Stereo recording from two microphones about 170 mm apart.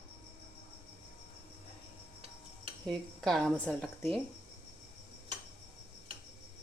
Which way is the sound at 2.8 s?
Centre (ahead or behind).